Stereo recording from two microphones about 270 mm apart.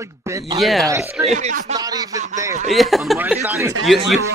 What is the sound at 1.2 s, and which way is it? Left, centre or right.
Speech, right.